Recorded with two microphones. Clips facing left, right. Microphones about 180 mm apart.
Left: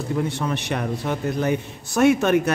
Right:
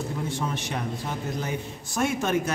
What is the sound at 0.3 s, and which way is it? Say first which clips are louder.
A man's voice: left 4 dB; 70° left (ahead or behind).